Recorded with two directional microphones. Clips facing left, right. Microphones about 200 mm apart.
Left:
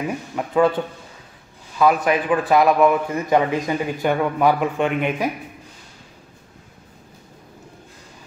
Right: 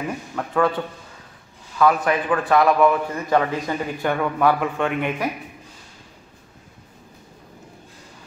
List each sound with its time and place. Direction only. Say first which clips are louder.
0.4 s a man's voice: left 3 dB; 20° left (ahead or behind)
1.8 s a man's voice: left 1 dB; 15° left (ahead or behind)